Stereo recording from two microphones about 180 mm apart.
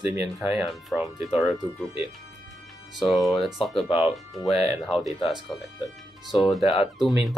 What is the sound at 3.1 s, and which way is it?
Speech, centre (ahead or behind).